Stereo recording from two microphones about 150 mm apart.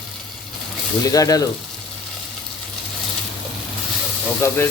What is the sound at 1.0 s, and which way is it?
Speech, 25° left (ahead or behind).